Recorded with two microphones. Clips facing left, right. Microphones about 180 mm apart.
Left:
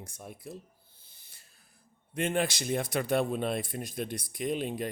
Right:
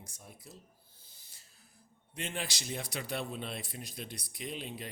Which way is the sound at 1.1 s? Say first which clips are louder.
Even; 60° left (ahead or behind).